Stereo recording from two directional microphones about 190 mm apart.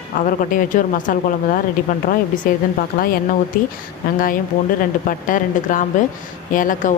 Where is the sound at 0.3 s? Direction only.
45° left (ahead or behind).